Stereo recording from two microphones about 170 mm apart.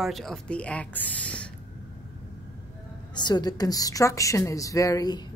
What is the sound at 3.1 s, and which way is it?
A woman's voice, 25° left (ahead or behind).